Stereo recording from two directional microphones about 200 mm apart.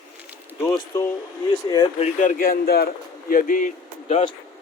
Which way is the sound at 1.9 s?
35° left (ahead or behind).